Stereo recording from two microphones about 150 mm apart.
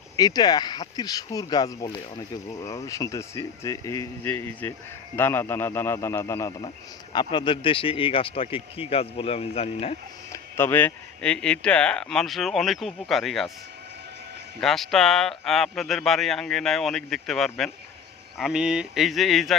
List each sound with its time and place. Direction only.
0.2 s a man's voice: 25° left (ahead or behind)
7.1 s speech: 30° left (ahead or behind)
10.3 s speech: 15° left (ahead or behind)
14.6 s speech: centre (ahead or behind)